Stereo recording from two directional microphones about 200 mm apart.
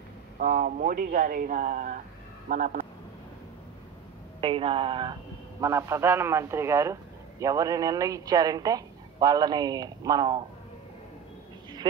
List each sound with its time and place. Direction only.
0.4 s speech: 45° right (ahead or behind)
4.4 s speech: 25° right (ahead or behind)
5.6 s a man's voice: 15° right (ahead or behind)
11.8 s speech: 20° right (ahead or behind)